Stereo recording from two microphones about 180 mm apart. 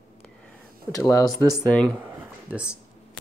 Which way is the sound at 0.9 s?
15° left (ahead or behind).